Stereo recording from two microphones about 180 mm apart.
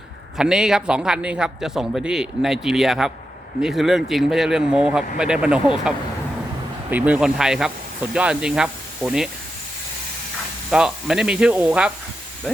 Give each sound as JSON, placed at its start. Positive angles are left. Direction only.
{"t": 0.3, "sound": "a man's voice", "side_deg": -5}
{"t": 6.9, "sound": "a man's voice", "side_deg": -10}
{"t": 10.7, "sound": "a man's voice", "side_deg": -5}